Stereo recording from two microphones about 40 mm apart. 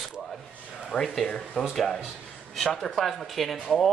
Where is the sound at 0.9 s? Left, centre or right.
Left.